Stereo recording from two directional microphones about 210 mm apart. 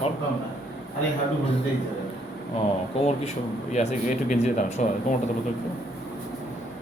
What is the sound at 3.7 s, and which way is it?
Speech, 30° left (ahead or behind).